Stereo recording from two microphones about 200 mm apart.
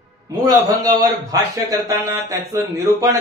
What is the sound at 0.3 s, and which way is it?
A man's voice, 20° right (ahead or behind).